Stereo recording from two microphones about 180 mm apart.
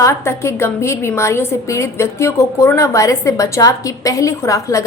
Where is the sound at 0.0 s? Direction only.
15° left (ahead or behind).